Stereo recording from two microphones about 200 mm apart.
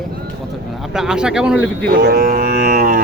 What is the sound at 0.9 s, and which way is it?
Speech, 5° right (ahead or behind).